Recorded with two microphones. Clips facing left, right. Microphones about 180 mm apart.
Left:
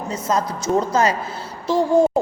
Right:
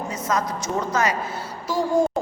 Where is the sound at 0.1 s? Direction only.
30° left (ahead or behind).